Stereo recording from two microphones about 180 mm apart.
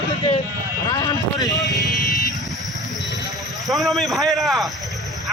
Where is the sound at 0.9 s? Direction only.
20° left (ahead or behind).